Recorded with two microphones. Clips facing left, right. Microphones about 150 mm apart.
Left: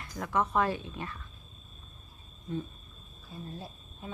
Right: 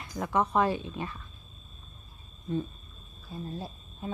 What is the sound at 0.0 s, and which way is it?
Speech, 20° right (ahead or behind).